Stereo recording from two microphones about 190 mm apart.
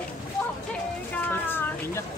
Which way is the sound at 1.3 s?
10° left (ahead or behind).